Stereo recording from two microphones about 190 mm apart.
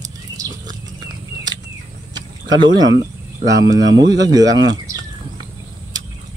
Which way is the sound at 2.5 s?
20° right (ahead or behind).